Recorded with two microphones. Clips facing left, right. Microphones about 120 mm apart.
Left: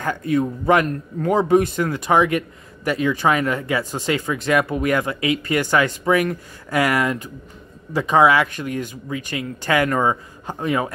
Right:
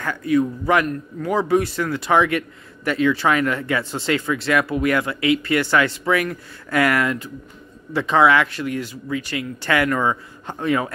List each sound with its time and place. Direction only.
0.2 s speech: 25° left (ahead or behind)